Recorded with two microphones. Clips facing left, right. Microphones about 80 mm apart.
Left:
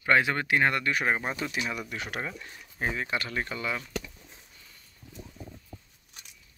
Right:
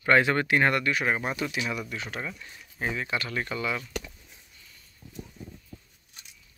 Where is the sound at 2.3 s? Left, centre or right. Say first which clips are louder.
Left 1 dB; left.